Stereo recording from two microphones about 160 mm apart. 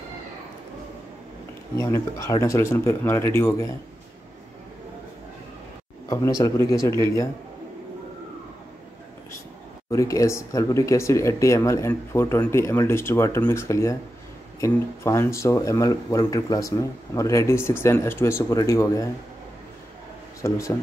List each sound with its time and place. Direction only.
1.8 s speech: 20° left (ahead or behind)
6.0 s speech: 20° left (ahead or behind)
9.8 s speech: 20° left (ahead or behind)
20.4 s speech: 20° left (ahead or behind)